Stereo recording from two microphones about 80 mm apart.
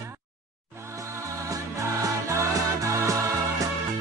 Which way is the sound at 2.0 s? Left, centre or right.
Right.